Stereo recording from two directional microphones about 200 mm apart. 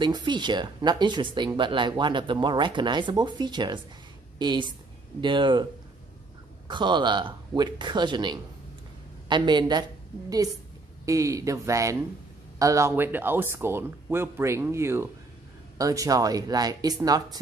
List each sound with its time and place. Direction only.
0.0 s speech: 20° right (ahead or behind)
6.7 s speech: 25° right (ahead or behind)
11.1 s speech: 15° right (ahead or behind)